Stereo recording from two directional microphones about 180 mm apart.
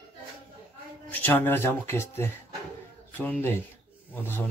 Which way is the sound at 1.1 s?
10° left (ahead or behind).